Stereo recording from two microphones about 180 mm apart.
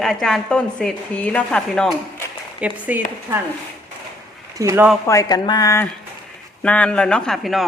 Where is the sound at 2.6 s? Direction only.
10° right (ahead or behind).